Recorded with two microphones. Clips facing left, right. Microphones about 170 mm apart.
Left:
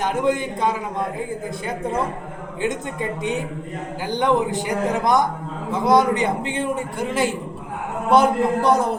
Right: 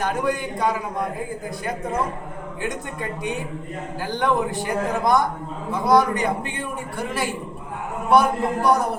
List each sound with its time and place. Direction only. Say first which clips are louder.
0.0 s speech: left 3 dB; 20° left (ahead or behind)
2.6 s speech: left 5 dB; 20° left (ahead or behind)